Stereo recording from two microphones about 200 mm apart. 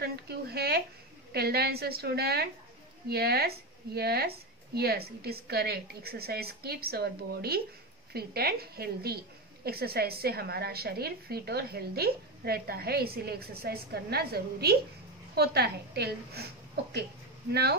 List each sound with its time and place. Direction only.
0.0 s a sound: 55° right (ahead or behind)
1.3 s a woman's voice: 50° right (ahead or behind)
8.1 s a woman's voice: 50° right (ahead or behind)
17.5 s a woman's voice: 55° right (ahead or behind)